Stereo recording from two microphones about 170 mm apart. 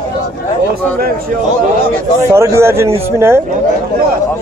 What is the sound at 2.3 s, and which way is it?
A man's voice, 15° right (ahead or behind).